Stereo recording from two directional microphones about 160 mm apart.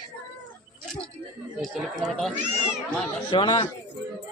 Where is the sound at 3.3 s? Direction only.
30° left (ahead or behind).